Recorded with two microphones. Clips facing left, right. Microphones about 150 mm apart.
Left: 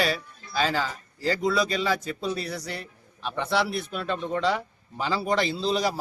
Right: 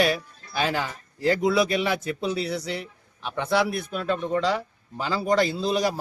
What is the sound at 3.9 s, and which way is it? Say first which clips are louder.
Speech: right 4 dB; centre (ahead or behind).